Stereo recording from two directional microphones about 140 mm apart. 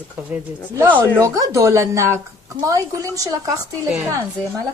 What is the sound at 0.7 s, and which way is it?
A woman's voice, 20° right (ahead or behind).